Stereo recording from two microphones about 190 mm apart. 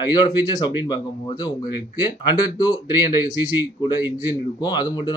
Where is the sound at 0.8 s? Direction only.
25° left (ahead or behind).